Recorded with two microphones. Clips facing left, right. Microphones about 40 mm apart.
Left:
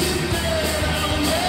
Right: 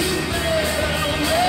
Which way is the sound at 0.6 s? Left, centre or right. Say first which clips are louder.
Right 2 dB; centre.